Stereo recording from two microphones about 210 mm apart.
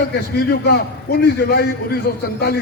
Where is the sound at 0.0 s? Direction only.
50° left (ahead or behind).